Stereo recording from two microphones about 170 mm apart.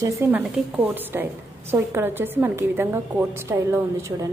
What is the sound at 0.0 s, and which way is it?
A woman's voice, 10° right (ahead or behind).